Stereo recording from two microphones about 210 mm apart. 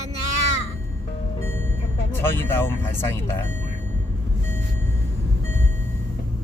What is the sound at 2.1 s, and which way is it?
Speech, 10° left (ahead or behind).